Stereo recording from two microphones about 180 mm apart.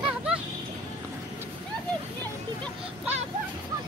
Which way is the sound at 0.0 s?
5° right (ahead or behind).